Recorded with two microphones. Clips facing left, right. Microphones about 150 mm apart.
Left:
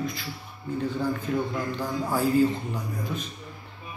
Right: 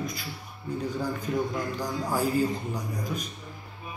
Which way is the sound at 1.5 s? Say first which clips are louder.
Left 1 dB; 10° right (ahead or behind).